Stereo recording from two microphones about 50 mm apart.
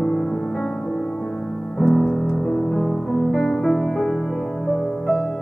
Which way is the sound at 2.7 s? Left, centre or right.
Centre.